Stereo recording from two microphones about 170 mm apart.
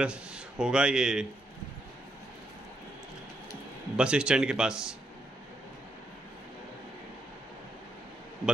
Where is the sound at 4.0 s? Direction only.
5° right (ahead or behind).